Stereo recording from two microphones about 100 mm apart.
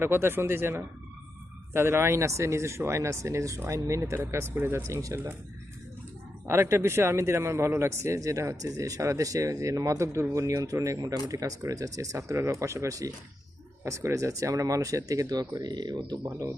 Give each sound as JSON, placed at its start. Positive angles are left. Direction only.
{"t": 0.0, "sound": "speech", "side_deg": -25}
{"t": 6.5, "sound": "a man's voice", "side_deg": -25}
{"t": 16.2, "sound": "speech", "side_deg": -30}